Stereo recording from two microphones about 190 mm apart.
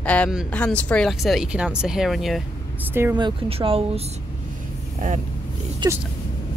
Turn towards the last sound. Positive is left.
turn(degrees=-25)  # may be behind; listen again after turning